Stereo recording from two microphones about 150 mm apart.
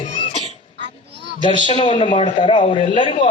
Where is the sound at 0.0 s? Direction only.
45° left (ahead or behind).